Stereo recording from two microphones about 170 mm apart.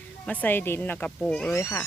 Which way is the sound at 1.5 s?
20° left (ahead or behind).